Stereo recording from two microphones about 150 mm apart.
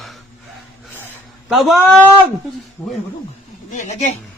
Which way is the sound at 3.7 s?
55° left (ahead or behind).